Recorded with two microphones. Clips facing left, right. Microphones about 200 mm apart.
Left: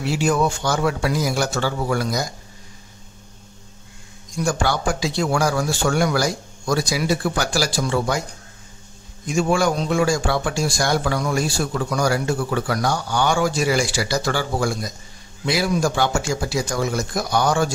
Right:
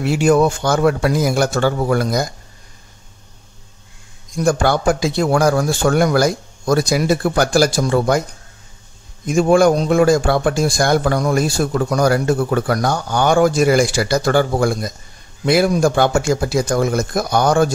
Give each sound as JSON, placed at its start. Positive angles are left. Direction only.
{"t": 0.0, "sound": "speech", "side_deg": -60}
{"t": 4.4, "sound": "a man's voice", "side_deg": -55}
{"t": 9.2, "sound": "a man's voice", "side_deg": -55}